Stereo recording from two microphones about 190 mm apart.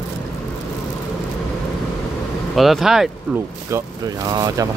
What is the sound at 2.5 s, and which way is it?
Speech, centre (ahead or behind).